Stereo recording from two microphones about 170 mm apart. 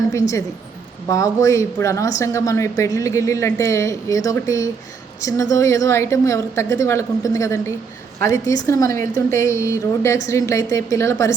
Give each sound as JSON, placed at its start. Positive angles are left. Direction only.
{"t": 0.1, "sound": "speech", "side_deg": 20}